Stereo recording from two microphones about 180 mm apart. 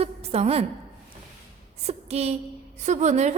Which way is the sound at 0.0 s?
35° right (ahead or behind).